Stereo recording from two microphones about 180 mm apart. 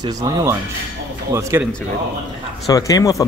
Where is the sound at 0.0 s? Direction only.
20° right (ahead or behind).